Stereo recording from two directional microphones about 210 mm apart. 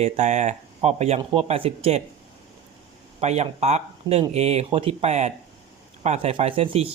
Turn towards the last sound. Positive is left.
turn(degrees=-25)  # may be behind; listen again after turning